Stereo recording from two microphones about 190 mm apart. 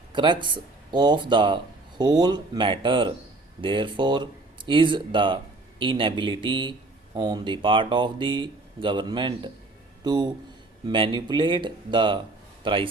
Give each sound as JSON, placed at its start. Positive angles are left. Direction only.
{"t": 0.1, "sound": "speech", "side_deg": -25}